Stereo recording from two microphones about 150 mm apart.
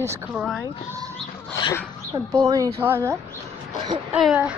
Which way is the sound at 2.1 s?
20° right (ahead or behind).